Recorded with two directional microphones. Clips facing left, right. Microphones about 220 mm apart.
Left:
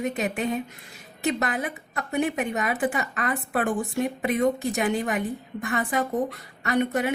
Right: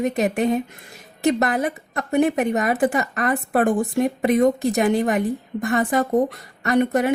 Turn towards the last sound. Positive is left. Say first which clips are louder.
# right 5 dB
turn(degrees=-45)  # may be behind; listen again after turning